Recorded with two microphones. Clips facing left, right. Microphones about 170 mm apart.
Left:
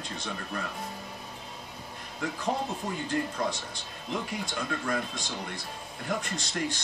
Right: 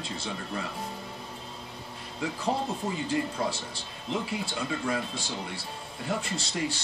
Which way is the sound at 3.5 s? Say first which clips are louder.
Right 1 dB; 30° right (ahead or behind).